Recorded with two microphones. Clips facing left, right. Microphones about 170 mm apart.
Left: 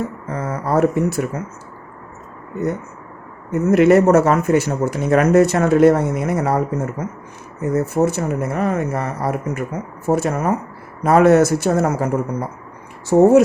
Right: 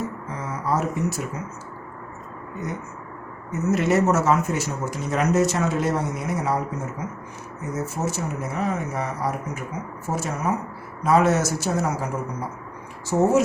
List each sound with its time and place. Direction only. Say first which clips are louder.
0.3 s speech: left 7 dB; 55° left (ahead or behind)
3.5 s speech: left 9 dB; 55° left (ahead or behind)
7.6 s speech: left 10 dB; 60° left (ahead or behind)